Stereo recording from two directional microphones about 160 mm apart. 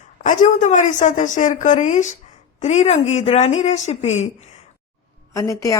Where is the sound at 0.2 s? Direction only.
50° left (ahead or behind).